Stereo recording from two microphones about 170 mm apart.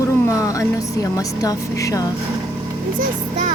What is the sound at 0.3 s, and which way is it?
Music, 20° left (ahead or behind).